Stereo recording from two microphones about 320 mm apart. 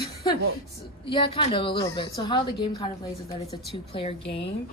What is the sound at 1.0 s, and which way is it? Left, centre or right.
Speech, centre.